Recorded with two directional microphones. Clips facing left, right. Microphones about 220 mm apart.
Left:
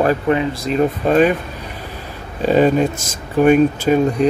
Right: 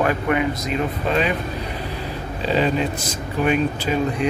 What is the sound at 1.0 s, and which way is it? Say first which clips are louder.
Mantra: left 7 dB; 50° left (ahead or behind).